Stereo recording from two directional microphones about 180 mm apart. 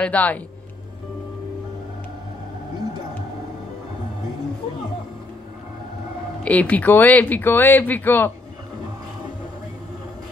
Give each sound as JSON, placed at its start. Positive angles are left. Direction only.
{"t": 0.0, "sound": "speech", "side_deg": 10}
{"t": 6.4, "sound": "speech", "side_deg": 10}